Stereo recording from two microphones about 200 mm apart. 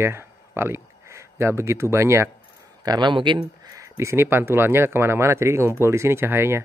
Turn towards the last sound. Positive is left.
turn(degrees=-10)  # may be behind; listen again after turning